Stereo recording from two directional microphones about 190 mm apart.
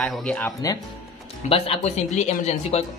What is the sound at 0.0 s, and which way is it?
Speech, 5° left (ahead or behind).